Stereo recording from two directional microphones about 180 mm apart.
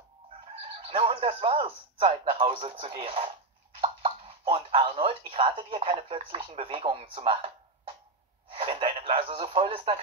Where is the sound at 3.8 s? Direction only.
30° right (ahead or behind).